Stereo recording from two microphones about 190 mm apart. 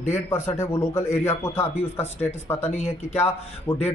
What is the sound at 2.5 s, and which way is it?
Speech, 35° left (ahead or behind).